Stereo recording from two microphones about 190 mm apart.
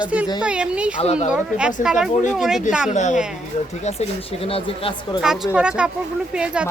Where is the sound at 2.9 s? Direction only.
40° left (ahead or behind).